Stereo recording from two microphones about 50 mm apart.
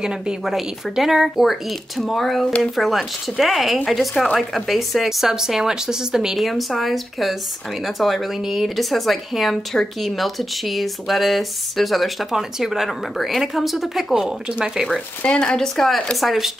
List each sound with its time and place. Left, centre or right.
0.0 s speech: centre
4.1 s a woman's voice: centre
4.6 s speech: centre
15.2 s a woman's voice: centre